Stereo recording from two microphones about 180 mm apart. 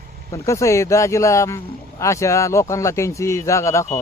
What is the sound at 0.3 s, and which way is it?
Speech, 15° left (ahead or behind).